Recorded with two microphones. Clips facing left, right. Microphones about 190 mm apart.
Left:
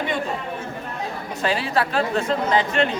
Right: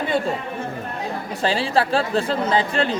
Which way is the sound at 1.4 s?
30° right (ahead or behind).